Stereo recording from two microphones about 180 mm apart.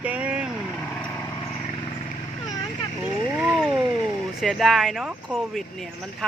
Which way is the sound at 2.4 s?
20° left (ahead or behind).